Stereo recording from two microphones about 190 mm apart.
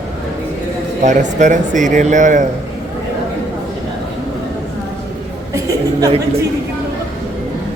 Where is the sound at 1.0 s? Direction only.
40° right (ahead or behind).